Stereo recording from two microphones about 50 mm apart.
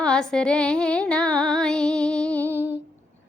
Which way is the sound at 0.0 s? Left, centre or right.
Centre.